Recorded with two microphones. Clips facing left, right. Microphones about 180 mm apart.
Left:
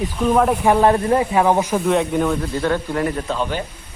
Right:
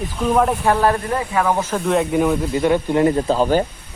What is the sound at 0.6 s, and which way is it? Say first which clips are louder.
Speech: left 2 dB; 20° left (ahead or behind).